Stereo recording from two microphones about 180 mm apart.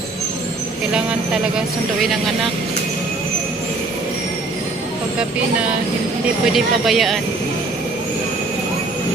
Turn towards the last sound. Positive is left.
turn(degrees=0)  # may be behind; listen again after turning